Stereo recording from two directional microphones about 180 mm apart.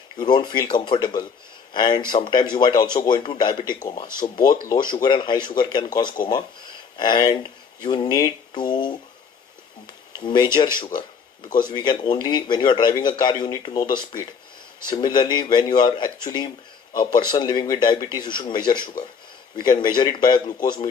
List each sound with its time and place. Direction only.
0.2 s a man's voice: 25° left (ahead or behind)
11.7 s a man's voice: 25° left (ahead or behind)